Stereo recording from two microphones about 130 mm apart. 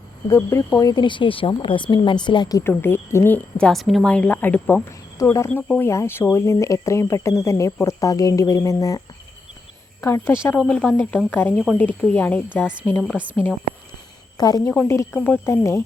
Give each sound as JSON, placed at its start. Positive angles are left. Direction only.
{"t": 0.3, "sound": "speech", "side_deg": 20}
{"t": 3.7, "sound": "a woman's voice", "side_deg": 0}
{"t": 10.0, "sound": "speech", "side_deg": 20}
{"t": 10.6, "sound": "a woman's voice", "side_deg": 5}
{"t": 14.3, "sound": "speech", "side_deg": 30}
{"t": 14.7, "sound": "a woman's voice", "side_deg": 15}